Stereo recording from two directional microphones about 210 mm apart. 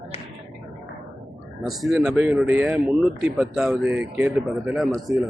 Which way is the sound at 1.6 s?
Centre (ahead or behind).